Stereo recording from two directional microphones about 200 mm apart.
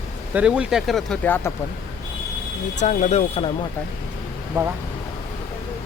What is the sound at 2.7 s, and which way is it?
Speech, 35° left (ahead or behind).